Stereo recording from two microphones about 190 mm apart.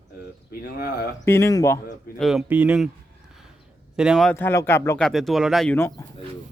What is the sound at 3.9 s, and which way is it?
Speech, centre (ahead or behind).